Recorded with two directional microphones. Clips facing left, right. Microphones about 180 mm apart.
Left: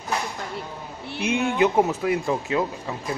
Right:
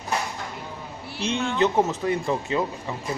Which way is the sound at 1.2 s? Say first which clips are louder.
Left 2 dB; 10° left (ahead or behind).